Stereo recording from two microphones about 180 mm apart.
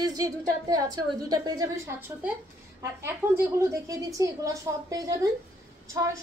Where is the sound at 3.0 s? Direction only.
15° right (ahead or behind).